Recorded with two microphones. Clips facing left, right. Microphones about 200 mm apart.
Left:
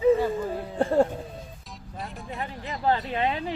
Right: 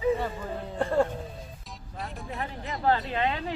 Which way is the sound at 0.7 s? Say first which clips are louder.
Left 3 dB; 30° left (ahead or behind).